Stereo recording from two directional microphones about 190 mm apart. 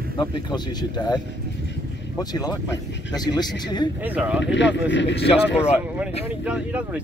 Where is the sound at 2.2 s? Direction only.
20° left (ahead or behind).